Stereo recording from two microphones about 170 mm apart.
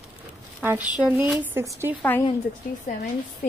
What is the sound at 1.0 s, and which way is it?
Speech, 10° right (ahead or behind).